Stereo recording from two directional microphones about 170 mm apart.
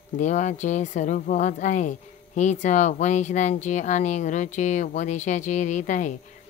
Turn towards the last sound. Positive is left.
turn(degrees=45)  # may be behind; listen again after turning